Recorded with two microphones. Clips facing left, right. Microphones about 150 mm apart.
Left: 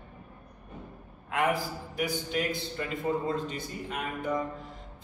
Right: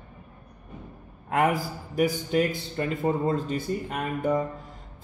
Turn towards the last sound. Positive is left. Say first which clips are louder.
# right 6 dB
turn(degrees=-45)  # may be behind; listen again after turning